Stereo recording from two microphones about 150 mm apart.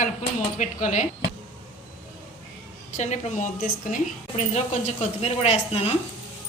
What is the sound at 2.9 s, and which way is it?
A woman's voice, 50° left (ahead or behind).